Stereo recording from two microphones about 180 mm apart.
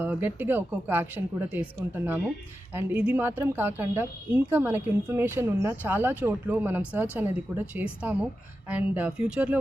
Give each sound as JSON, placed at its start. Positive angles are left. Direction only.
{"t": 0.0, "sound": "a woman's voice", "side_deg": -10}